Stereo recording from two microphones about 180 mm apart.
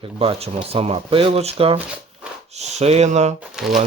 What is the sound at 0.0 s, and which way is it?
Speech, 30° right (ahead or behind).